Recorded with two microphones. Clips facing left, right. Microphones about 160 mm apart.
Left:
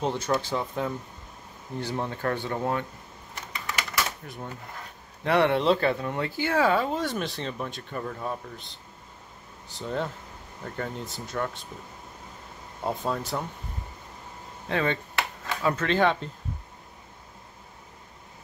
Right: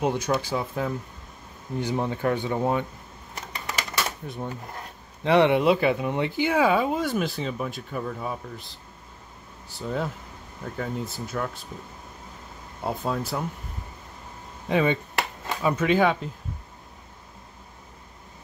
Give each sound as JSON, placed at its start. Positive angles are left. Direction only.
{"t": 0.0, "sound": "speech", "side_deg": -15}
{"t": 1.8, "sound": "speech", "side_deg": -15}
{"t": 3.6, "sound": "typewriter", "side_deg": -25}
{"t": 5.2, "sound": "speech", "side_deg": -20}
{"t": 12.8, "sound": "speech", "side_deg": -10}
{"t": 14.7, "sound": "speech", "side_deg": -15}